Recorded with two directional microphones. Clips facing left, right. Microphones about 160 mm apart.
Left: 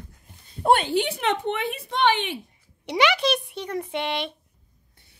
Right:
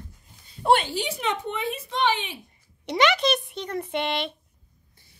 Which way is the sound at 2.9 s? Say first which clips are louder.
Even; 5° left (ahead or behind).